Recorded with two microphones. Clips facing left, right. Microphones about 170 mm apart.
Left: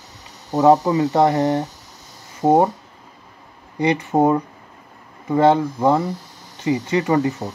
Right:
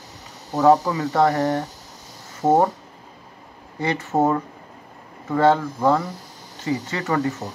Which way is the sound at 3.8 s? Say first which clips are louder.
Left 4 dB; 15° left (ahead or behind).